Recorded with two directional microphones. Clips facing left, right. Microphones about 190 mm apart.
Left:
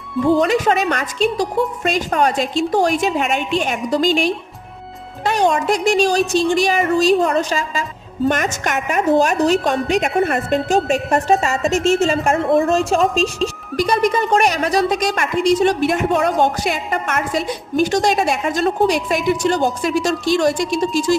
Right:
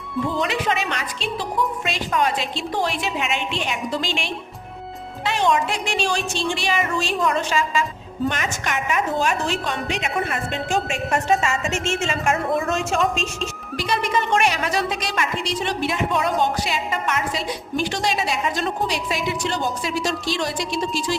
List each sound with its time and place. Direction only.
0.3 s a woman's voice: 40° left (ahead or behind)